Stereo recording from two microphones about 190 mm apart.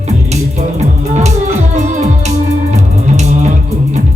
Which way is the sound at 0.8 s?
35° right (ahead or behind).